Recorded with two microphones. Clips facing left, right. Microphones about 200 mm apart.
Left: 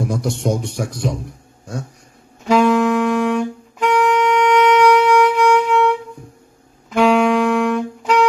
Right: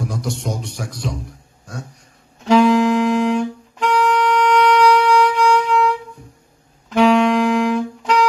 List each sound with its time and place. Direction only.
0.1 s a man's voice: 55° left (ahead or behind)
2.4 s saxophone: centre (ahead or behind)
6.9 s music: centre (ahead or behind)